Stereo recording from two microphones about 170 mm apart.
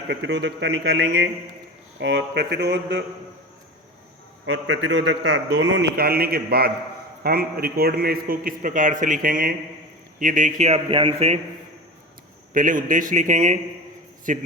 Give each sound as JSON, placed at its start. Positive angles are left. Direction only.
{"t": 0.1, "sound": "a man's voice", "side_deg": -90}
{"t": 4.4, "sound": "a man's voice", "side_deg": -90}
{"t": 12.5, "sound": "a man's voice", "side_deg": -50}